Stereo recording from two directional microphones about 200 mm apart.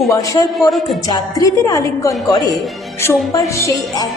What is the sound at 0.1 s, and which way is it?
A woman's voice, 15° left (ahead or behind).